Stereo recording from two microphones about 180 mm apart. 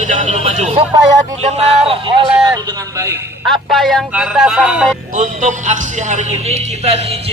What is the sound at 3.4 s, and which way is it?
A man's voice, centre (ahead or behind).